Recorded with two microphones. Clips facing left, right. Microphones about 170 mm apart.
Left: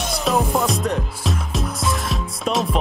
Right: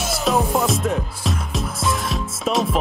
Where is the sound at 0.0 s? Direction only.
Centre (ahead or behind).